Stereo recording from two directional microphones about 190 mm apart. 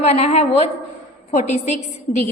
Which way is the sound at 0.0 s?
35° left (ahead or behind).